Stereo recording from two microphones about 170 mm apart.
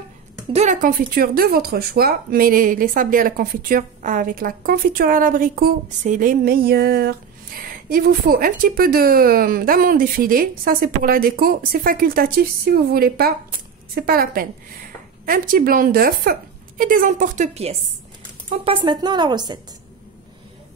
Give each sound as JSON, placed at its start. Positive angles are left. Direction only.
{"t": 0.5, "sound": "speech", "side_deg": -45}
{"t": 18.6, "sound": "a woman's voice", "side_deg": -30}